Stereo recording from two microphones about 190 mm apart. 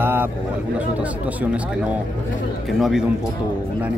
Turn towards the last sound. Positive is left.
turn(degrees=0)  # may be behind; listen again after turning